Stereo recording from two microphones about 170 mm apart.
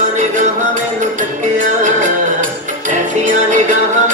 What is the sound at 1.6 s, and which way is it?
Music, 50° right (ahead or behind).